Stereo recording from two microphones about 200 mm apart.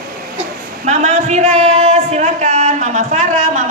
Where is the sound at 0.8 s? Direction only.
35° right (ahead or behind).